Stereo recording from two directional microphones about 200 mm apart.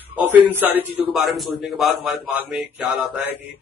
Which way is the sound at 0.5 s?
10° right (ahead or behind).